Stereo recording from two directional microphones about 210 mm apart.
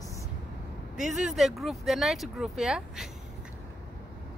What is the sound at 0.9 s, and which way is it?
Speech, 5° right (ahead or behind).